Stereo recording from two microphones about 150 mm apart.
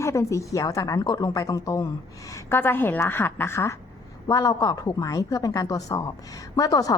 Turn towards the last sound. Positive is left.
turn(degrees=25)  # may be behind; listen again after turning